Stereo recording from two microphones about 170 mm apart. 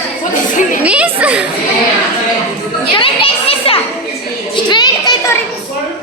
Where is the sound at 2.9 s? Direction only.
35° left (ahead or behind).